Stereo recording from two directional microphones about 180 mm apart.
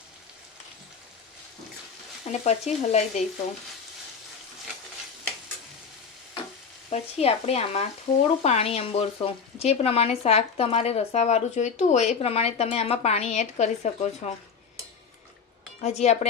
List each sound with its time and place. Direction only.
2.2 s speech: 40° left (ahead or behind)
6.9 s speech: 35° left (ahead or behind)
15.8 s speech: 40° left (ahead or behind)